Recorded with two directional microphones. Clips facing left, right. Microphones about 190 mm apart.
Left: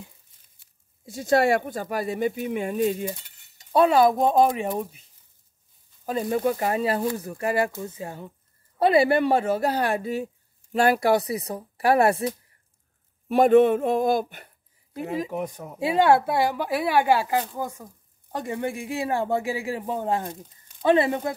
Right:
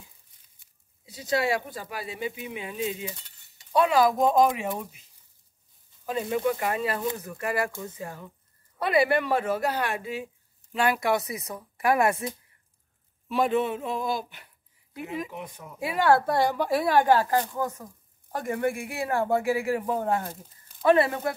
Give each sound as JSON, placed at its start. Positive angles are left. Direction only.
{"t": 1.0, "sound": "speech", "side_deg": 50}
{"t": 3.5, "sound": "speech", "side_deg": 35}
{"t": 6.0, "sound": "a man's voice", "side_deg": 40}
{"t": 13.3, "sound": "speech", "side_deg": 50}
{"t": 15.0, "sound": "speech", "side_deg": 35}
{"t": 15.8, "sound": "a man's voice", "side_deg": 25}
{"t": 16.3, "sound": "a man's voice", "side_deg": 5}